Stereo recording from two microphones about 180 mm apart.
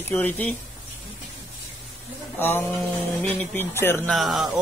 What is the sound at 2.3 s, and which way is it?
Speech, 10° left (ahead or behind).